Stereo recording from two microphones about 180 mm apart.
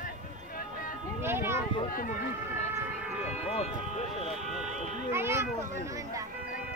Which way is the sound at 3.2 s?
35° left (ahead or behind).